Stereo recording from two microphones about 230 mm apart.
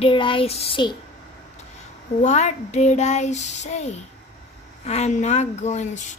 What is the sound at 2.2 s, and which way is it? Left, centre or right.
Speech, left.